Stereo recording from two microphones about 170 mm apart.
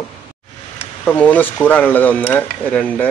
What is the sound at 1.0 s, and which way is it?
Speech, 10° left (ahead or behind).